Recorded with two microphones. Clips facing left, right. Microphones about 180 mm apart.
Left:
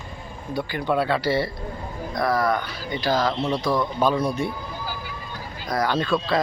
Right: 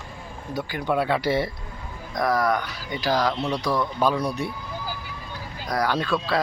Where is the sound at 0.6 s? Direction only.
5° right (ahead or behind).